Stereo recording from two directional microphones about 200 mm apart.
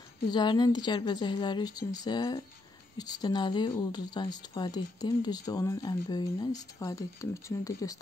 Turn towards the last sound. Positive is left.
turn(degrees=15)  # may be behind; listen again after turning